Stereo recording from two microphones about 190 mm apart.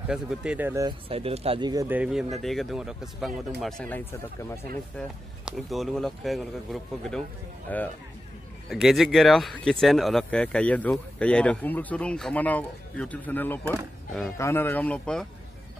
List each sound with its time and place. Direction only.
0.1 s speech: 5° right (ahead or behind)
0.8 s speech: 30° right (ahead or behind)
1.9 s speech: 5° right (ahead or behind)